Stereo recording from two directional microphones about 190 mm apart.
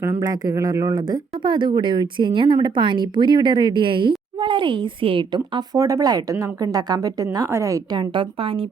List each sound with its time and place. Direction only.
0.0 s a woman's voice: 15° right (ahead or behind)